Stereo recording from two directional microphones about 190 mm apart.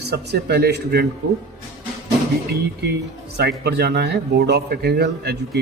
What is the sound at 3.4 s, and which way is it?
Speech, 60° right (ahead or behind).